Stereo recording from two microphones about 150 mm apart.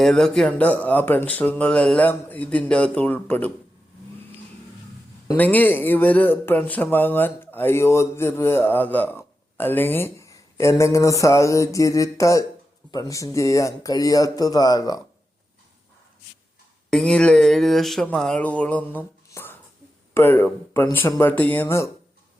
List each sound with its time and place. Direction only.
0.0 s speech: 5° left (ahead or behind)
5.4 s speech: 10° left (ahead or behind)
16.9 s speech: 5° left (ahead or behind)
19.3 s whispering: 15° left (ahead or behind)
20.1 s speech: 15° left (ahead or behind)